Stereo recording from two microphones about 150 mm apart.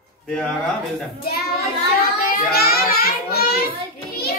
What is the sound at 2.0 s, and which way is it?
A child's voice, 75° left (ahead or behind).